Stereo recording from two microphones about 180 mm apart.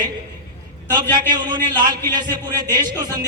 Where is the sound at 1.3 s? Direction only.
25° right (ahead or behind).